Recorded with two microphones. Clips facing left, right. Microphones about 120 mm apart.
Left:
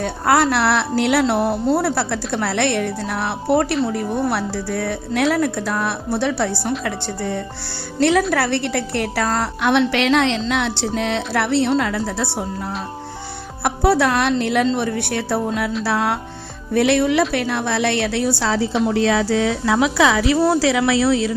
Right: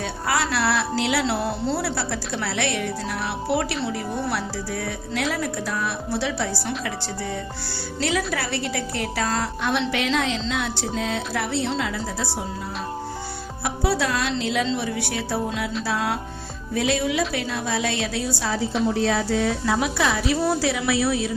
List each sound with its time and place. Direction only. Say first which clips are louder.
0.0 s speech: left 8 dB; 55° left (ahead or behind)
9.6 s a woman's voice: left 10 dB; 75° left (ahead or behind)
13.7 s a woman's voice: left 7 dB; 60° left (ahead or behind); by 18.8 s 80° left
18.9 s a woman's voice: left 5 dB; 90° left